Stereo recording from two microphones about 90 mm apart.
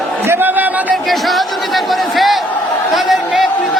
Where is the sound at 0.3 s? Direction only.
20° right (ahead or behind).